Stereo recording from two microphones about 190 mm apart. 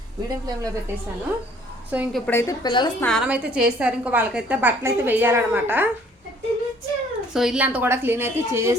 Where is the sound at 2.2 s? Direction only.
10° left (ahead or behind).